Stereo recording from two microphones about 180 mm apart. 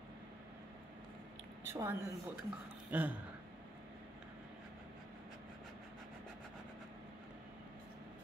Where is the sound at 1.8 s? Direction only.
15° right (ahead or behind).